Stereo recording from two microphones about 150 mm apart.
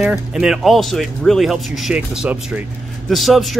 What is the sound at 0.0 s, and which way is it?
Speech, 5° right (ahead or behind).